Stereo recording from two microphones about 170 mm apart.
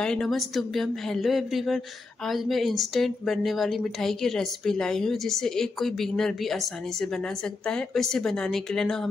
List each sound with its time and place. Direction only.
0.0 s a woman's voice: 5° left (ahead or behind)